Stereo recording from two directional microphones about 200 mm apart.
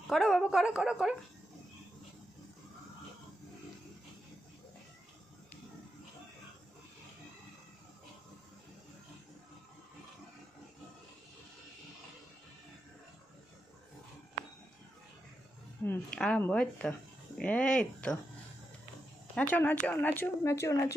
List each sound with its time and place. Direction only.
0.1 s speech: centre (ahead or behind)
15.8 s speech: 5° left (ahead or behind)
19.3 s a woman's voice: 10° left (ahead or behind)